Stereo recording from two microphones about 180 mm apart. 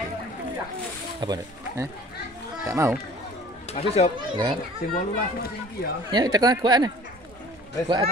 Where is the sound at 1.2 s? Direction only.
20° right (ahead or behind).